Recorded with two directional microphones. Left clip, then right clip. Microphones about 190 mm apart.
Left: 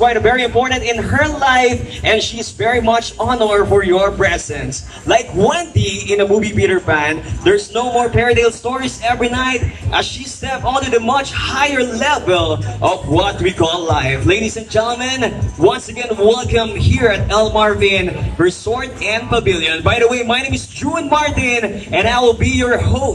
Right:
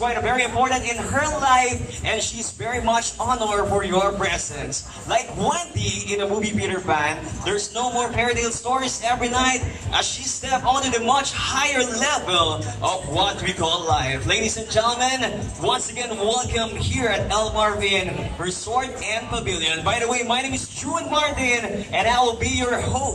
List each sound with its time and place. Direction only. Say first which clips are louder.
0.0 s a man's voice: left 9 dB; 55° left (ahead or behind)